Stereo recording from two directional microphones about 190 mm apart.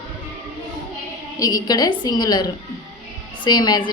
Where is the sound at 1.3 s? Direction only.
20° left (ahead or behind).